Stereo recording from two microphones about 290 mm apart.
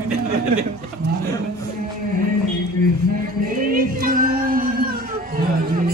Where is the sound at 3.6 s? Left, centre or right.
Right.